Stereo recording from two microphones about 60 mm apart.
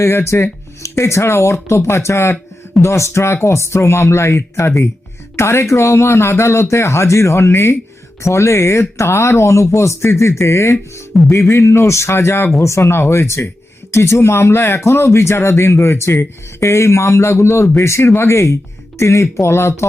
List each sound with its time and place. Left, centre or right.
0.0 s speech: left